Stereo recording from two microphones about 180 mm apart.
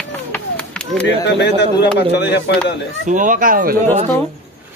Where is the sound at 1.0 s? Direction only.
75° left (ahead or behind).